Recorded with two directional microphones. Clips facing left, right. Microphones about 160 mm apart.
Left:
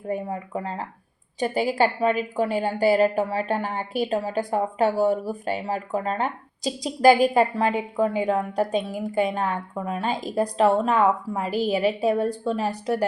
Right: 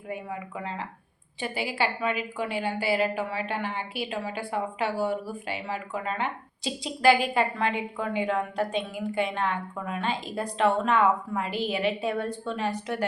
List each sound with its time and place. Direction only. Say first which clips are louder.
0.1 s a woman's voice: left 7 dB; 40° left (ahead or behind)